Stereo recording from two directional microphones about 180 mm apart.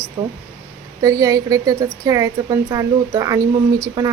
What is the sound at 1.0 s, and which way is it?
A woman's voice, 20° right (ahead or behind).